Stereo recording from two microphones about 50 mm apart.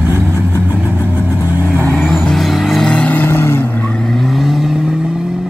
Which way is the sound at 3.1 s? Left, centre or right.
Left.